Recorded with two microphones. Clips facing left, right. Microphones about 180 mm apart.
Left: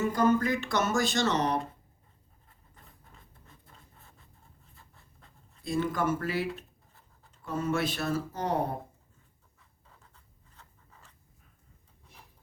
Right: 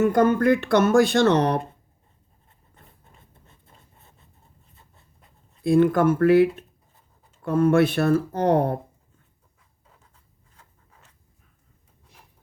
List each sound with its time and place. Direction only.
0.0 s speech: 60° right (ahead or behind)
3.0 s writing: 25° right (ahead or behind)
4.7 s a sound: 20° right (ahead or behind)
5.6 s speech: 55° right (ahead or behind)